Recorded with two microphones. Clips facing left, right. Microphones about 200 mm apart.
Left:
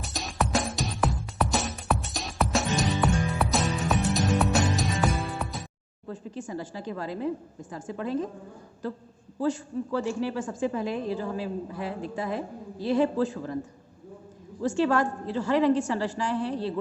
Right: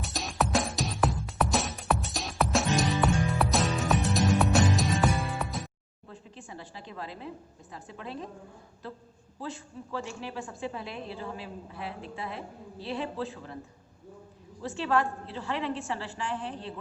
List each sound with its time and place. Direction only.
0.0 s music: centre (ahead or behind)
6.1 s a woman's voice: 45° left (ahead or behind)
9.4 s a woman's voice: 45° left (ahead or behind)
14.6 s a woman's voice: 45° left (ahead or behind)